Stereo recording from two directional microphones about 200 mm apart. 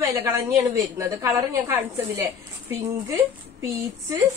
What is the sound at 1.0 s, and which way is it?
A woman's voice, 15° right (ahead or behind).